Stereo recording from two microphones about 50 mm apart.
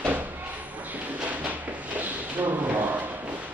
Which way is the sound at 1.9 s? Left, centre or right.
Right.